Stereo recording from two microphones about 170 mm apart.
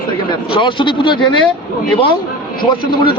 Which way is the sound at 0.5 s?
30° left (ahead or behind).